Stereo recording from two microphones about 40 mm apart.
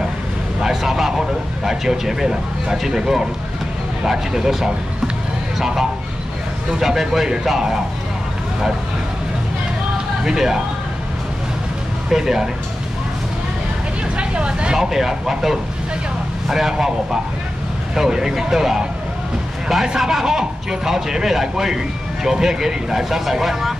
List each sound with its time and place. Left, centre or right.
0.6 s speech: centre
6.8 s speech: centre
10.2 s speech: centre
12.1 s speech: centre
14.1 s vehicle: right
14.8 s speech: centre
20.0 s speech: centre